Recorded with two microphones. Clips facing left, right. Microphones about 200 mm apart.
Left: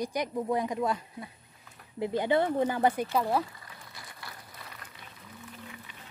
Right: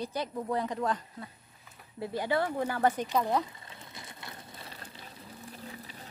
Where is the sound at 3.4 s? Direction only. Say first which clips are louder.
Right 1 dB; 25° right (ahead or behind).